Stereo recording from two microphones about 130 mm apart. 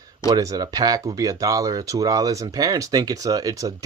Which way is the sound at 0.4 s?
30° right (ahead or behind).